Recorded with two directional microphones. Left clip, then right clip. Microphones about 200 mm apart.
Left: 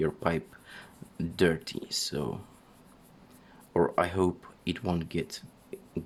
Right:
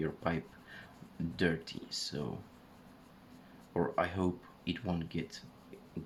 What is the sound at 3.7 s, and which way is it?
Speech, 55° left (ahead or behind).